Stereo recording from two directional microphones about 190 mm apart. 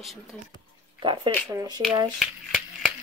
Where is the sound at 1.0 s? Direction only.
25° right (ahead or behind).